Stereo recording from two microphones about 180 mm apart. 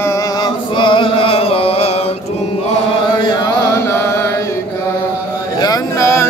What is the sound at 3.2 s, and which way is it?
Chant, 20° left (ahead or behind).